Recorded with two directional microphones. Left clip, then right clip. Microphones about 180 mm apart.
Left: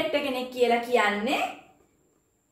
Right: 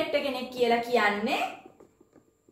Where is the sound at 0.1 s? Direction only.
15° right (ahead or behind).